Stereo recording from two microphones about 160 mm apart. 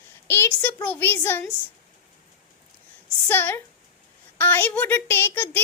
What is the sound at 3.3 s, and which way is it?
A woman's voice, 15° left (ahead or behind).